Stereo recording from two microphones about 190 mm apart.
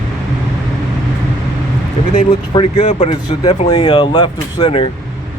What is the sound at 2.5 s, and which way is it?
Speech, 30° left (ahead or behind).